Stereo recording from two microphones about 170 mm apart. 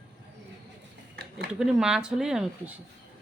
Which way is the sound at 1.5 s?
5° right (ahead or behind).